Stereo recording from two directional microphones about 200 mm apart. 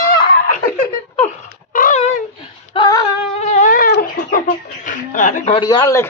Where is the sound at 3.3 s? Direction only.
40° left (ahead or behind).